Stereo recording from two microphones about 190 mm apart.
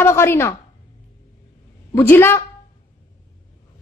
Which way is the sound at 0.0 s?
15° left (ahead or behind).